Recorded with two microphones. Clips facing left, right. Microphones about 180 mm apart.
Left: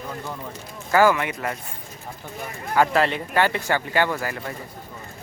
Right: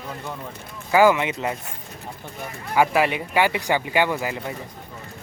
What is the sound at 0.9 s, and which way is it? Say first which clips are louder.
Speech: right 2 dB; 15° right (ahead or behind).